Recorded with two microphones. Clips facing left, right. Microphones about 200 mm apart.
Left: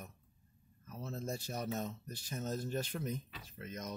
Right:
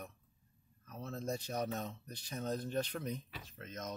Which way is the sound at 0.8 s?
5° left (ahead or behind).